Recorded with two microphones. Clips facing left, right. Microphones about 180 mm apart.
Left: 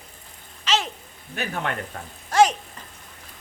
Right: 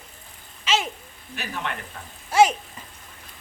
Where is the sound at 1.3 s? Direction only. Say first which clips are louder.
Left 3 dB; 50° left (ahead or behind).